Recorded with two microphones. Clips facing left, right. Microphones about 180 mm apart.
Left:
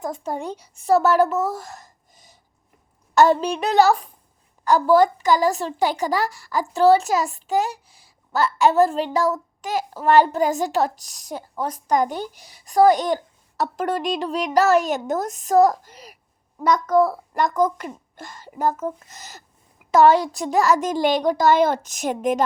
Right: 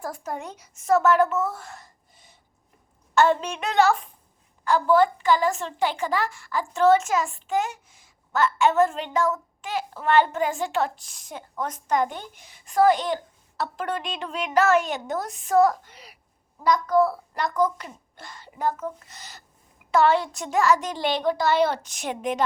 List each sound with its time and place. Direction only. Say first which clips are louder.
0.0 s a child's voice: left 5 dB; 25° left (ahead or behind); by 22.4 s 45° left (ahead or behind)